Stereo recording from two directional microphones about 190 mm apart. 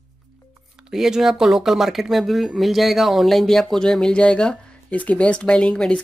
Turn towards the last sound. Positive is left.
turn(degrees=5)  # may be behind; listen again after turning